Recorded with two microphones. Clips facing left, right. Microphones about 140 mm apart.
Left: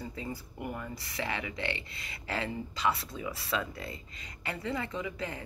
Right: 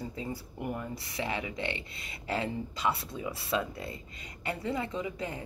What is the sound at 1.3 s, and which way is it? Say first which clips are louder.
Speech: right 1 dB; 15° right (ahead or behind).